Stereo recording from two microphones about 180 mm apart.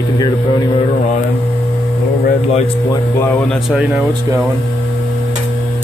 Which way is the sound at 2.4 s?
40° left (ahead or behind).